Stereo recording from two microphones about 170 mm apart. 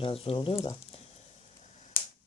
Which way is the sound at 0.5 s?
15° left (ahead or behind).